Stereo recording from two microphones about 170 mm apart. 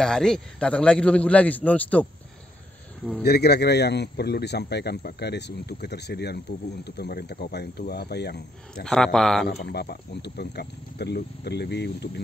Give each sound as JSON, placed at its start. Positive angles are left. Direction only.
{"t": 0.0, "sound": "a man's voice", "side_deg": 5}
{"t": 3.3, "sound": "a man's voice", "side_deg": 70}
{"t": 8.8, "sound": "a man's voice", "side_deg": 5}
{"t": 9.7, "sound": "a man's voice", "side_deg": 75}